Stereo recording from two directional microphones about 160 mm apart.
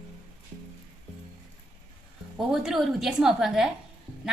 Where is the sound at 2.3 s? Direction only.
5° right (ahead or behind).